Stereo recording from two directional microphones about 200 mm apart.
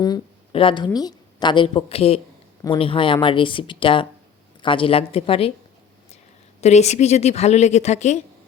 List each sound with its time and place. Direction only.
0.0 s a sound: 25° left (ahead or behind)
0.9 s a woman's voice: 20° left (ahead or behind)
6.6 s speech: 35° left (ahead or behind)